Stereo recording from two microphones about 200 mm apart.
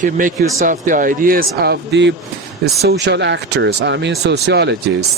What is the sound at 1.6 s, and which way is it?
Speech, 55° right (ahead or behind).